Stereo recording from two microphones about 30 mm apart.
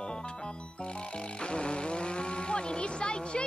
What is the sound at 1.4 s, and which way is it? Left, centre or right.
Speech, left.